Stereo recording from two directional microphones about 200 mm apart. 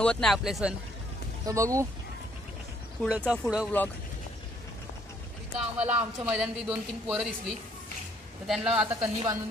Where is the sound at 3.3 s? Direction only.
5° right (ahead or behind).